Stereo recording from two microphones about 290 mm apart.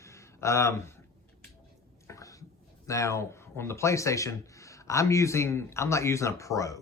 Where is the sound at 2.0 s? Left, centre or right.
Centre.